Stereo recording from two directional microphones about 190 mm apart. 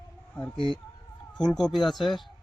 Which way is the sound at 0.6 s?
25° left (ahead or behind).